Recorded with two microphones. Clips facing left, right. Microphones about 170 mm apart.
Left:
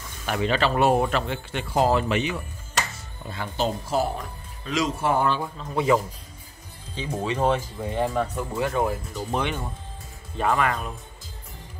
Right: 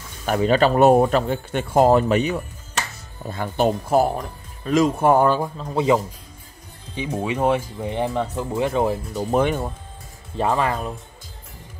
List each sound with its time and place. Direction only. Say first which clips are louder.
0.2 s speech: right 6 dB; 40° right (ahead or behind)
3.3 s speech: right 6 dB; 50° right (ahead or behind)
7.0 s speech: right 3 dB; 10° right (ahead or behind)
9.3 s speech: right 8 dB; 45° right (ahead or behind)
10.3 s speech: right 2 dB; 30° right (ahead or behind)